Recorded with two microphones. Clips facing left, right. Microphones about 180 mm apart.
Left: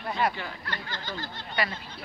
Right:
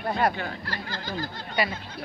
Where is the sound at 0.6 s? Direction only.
35° right (ahead or behind).